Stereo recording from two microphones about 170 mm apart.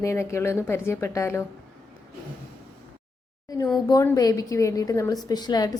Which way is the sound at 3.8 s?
20° left (ahead or behind).